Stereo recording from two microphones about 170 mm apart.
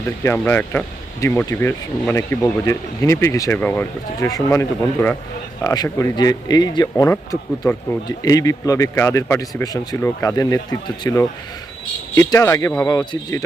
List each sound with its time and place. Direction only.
0.2 s speech: 15° left (ahead or behind)
5.6 s speech: 20° left (ahead or behind)